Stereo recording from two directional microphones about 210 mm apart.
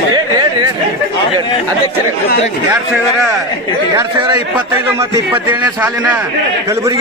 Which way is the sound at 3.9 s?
15° right (ahead or behind).